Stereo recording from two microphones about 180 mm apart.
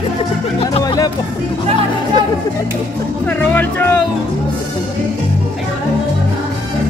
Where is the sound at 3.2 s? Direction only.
10° left (ahead or behind).